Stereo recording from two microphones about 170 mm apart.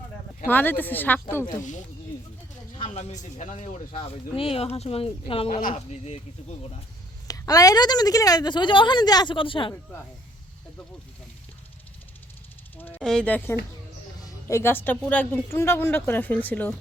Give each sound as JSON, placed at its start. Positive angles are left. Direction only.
{"t": 0.4, "sound": "speech", "side_deg": 10}
{"t": 2.7, "sound": "speech", "side_deg": 35}
{"t": 7.3, "sound": "a woman's voice", "side_deg": 20}
{"t": 12.7, "sound": "speech", "side_deg": 10}